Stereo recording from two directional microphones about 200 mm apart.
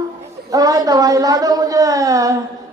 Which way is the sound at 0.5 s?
20° right (ahead or behind).